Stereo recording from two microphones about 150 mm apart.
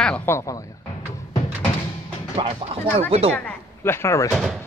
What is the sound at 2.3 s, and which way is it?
Speech, 40° right (ahead or behind).